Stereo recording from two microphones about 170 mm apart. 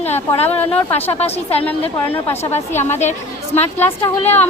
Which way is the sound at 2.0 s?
10° left (ahead or behind).